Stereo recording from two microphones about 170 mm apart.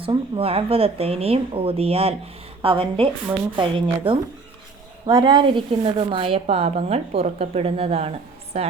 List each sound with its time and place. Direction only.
0.0 s a woman's voice: 35° right (ahead or behind)